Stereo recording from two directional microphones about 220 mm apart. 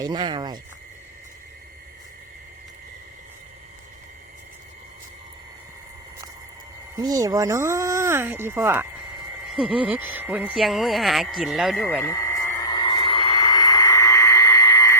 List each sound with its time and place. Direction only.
0.0 s speech: 20° right (ahead or behind)
6.9 s speech: 15° right (ahead or behind)
12.0 s a sound: 15° left (ahead or behind)